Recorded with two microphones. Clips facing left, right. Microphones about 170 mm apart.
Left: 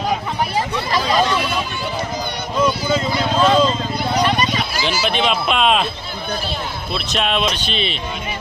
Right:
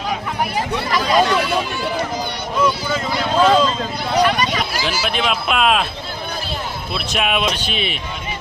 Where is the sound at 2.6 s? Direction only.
20° left (ahead or behind).